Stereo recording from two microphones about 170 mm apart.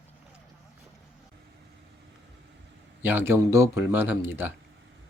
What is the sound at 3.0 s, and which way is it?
Speech, 10° right (ahead or behind).